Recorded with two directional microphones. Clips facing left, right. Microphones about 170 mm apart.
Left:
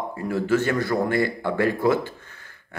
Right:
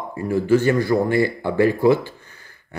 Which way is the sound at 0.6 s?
Centre (ahead or behind).